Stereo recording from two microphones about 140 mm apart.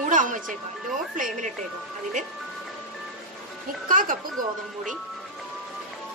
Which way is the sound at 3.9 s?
75° right (ahead or behind).